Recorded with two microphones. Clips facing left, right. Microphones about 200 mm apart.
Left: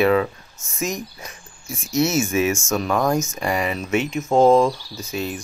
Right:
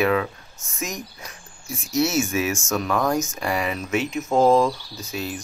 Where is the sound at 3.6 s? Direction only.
Centre (ahead or behind).